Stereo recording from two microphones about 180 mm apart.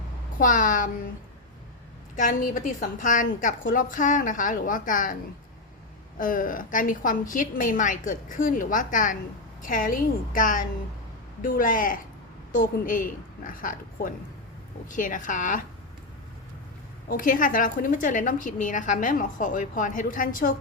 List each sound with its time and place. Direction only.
0.3 s a woman's voice: 45° left (ahead or behind)
2.1 s a woman's voice: 45° left (ahead or behind)
6.1 s a woman's voice: 50° left (ahead or behind)
17.1 s a woman's voice: 50° left (ahead or behind)